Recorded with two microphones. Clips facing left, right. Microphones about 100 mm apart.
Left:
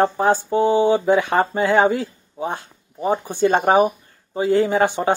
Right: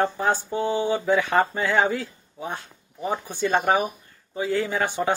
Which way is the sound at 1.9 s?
35° left (ahead or behind).